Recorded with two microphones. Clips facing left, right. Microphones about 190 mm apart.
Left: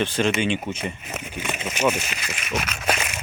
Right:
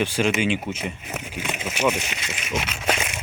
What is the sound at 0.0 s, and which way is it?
Speech, 10° right (ahead or behind).